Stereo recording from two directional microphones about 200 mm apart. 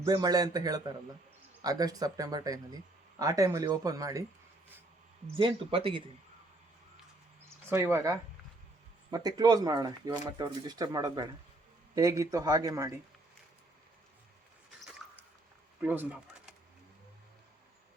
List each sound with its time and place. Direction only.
0.0 s speech: 20° right (ahead or behind)
5.4 s speech: 25° right (ahead or behind)
7.7 s speech: 15° right (ahead or behind)
15.8 s speech: 10° right (ahead or behind)